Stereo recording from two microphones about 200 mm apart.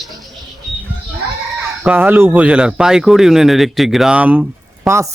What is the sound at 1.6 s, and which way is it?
Speech, 5° right (ahead or behind).